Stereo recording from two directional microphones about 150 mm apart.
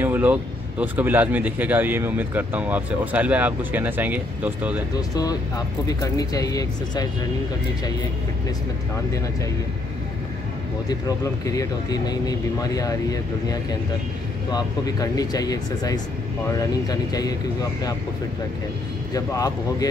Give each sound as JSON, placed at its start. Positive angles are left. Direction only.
{"t": 0.0, "sound": "speech", "side_deg": -10}
{"t": 4.9, "sound": "speech", "side_deg": 25}
{"t": 8.9, "sound": "speech", "side_deg": 20}
{"t": 10.9, "sound": "speech", "side_deg": 25}
{"t": 19.1, "sound": "speech", "side_deg": 25}